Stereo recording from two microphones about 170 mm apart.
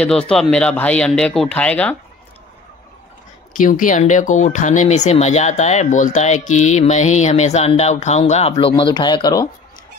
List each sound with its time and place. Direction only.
0.0 s speech: 5° left (ahead or behind)
3.5 s speech: 50° left (ahead or behind); by 9.5 s 20° left (ahead or behind)